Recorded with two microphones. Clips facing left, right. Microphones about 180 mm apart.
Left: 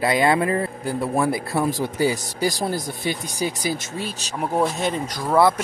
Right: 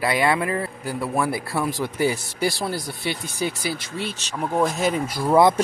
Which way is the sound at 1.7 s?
40° left (ahead or behind).